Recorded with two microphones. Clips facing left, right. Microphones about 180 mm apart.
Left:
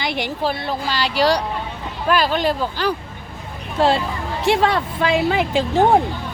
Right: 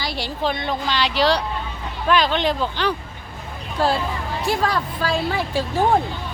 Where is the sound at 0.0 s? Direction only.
20° left (ahead or behind).